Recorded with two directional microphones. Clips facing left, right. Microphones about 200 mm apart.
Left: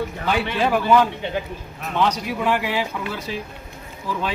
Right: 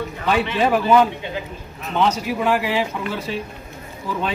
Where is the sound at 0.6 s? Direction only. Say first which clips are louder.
Right 1 dB; centre (ahead or behind).